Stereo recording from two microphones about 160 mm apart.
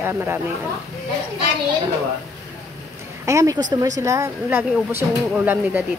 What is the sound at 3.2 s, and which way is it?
A woman's voice, 20° right (ahead or behind).